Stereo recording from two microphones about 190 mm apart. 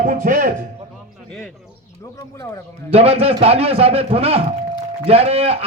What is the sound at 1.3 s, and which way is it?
Bird, 5° left (ahead or behind).